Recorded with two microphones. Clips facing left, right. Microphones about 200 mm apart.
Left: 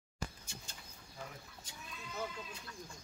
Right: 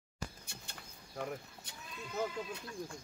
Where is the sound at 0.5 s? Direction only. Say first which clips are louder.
Right 1 dB; 60° right (ahead or behind).